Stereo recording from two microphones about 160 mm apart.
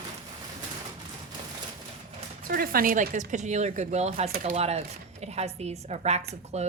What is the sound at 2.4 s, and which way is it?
Speech, 65° right (ahead or behind).